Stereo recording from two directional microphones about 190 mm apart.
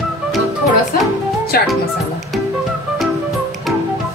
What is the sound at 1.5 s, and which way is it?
Speech, 55° left (ahead or behind).